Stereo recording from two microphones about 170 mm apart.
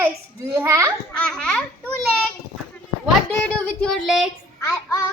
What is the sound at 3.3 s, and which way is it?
Speech, 5° left (ahead or behind).